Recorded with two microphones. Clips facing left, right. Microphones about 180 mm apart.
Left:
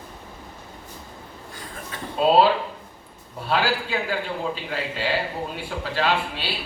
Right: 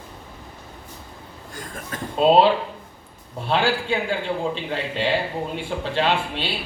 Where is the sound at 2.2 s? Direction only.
25° right (ahead or behind).